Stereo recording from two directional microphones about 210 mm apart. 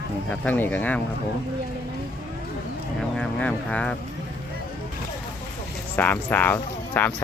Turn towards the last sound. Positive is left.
turn(degrees=10)  # may be behind; listen again after turning